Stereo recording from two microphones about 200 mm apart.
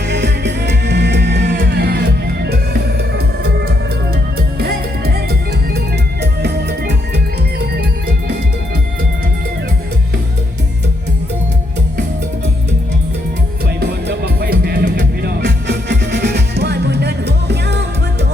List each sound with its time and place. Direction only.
0.1 s music: 60° right (ahead or behind)
14.4 s music: 50° right (ahead or behind)